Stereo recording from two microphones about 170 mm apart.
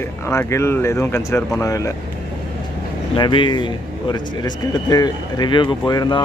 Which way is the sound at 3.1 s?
25° left (ahead or behind).